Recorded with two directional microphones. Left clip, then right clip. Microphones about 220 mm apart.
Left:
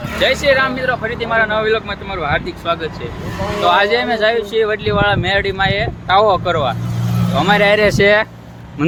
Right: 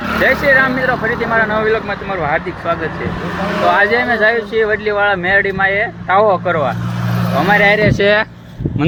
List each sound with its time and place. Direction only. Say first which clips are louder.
0.3 s speech: right 2 dB; 10° left (ahead or behind)
7.7 s speech: even; 45° left (ahead or behind)
8.0 s speech: even; 10° left (ahead or behind)